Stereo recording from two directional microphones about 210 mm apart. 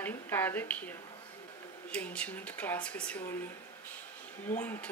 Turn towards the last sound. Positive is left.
turn(degrees=10)  # may be behind; listen again after turning